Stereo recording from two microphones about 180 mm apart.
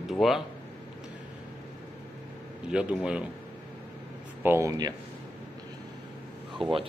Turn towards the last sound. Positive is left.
turn(degrees=-30)  # may be behind; listen again after turning